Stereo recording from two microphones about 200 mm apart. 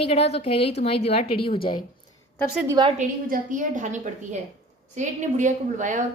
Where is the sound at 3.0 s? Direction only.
40° right (ahead or behind).